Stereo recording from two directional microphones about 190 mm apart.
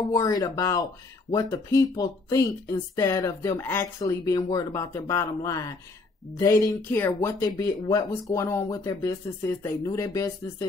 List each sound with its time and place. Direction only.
0.1 s speech: 20° left (ahead or behind)